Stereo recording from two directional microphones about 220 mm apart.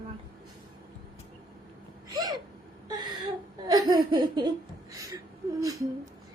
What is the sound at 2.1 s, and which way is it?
Gasp, 15° right (ahead or behind).